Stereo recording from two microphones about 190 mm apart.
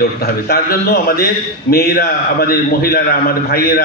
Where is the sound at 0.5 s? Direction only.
55° left (ahead or behind).